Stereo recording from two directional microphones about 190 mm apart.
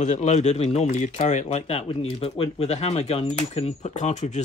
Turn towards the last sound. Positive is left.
turn(degrees=40)  # may be behind; listen again after turning